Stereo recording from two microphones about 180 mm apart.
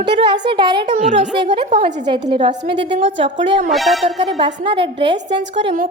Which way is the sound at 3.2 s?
85° right.